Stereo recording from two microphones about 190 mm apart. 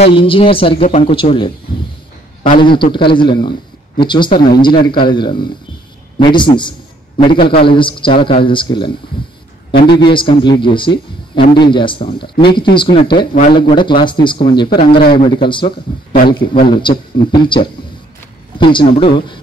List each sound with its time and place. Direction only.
0.0 s a man's voice: 30° left (ahead or behind)
10.1 s speech: 25° left (ahead or behind)
13.3 s a man's voice: 45° left (ahead or behind)
13.6 s speech: 25° left (ahead or behind)